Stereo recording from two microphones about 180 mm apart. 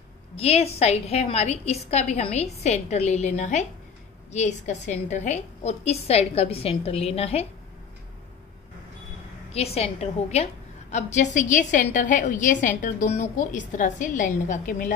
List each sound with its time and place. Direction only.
0.4 s a woman's voice: 35° left (ahead or behind)
9.5 s a woman's voice: 35° left (ahead or behind)